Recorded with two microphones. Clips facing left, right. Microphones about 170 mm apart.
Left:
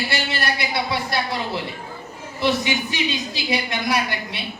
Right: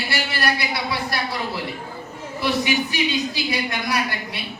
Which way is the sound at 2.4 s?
20° left (ahead or behind).